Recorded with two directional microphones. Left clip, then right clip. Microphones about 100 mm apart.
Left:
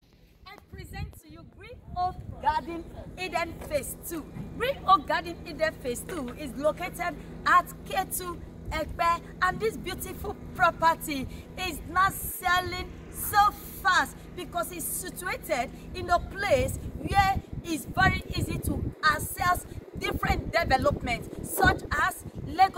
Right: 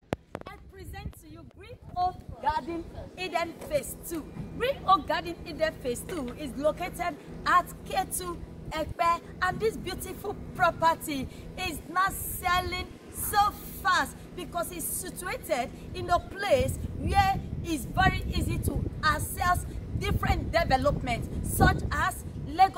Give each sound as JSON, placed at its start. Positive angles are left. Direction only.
{"t": 2.0, "sound": "speech", "side_deg": -5}
{"t": 10.5, "sound": "a woman's voice", "side_deg": -20}
{"t": 11.9, "sound": "female singing", "side_deg": -35}
{"t": 13.3, "sound": "speech", "side_deg": -55}
{"t": 14.3, "sound": "a woman's voice", "side_deg": -25}